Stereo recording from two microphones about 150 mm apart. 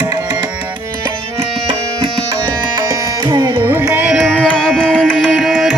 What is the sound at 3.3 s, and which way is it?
Music, 20° right (ahead or behind).